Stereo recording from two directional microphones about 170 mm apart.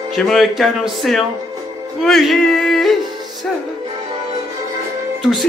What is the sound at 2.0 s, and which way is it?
Music, centre (ahead or behind).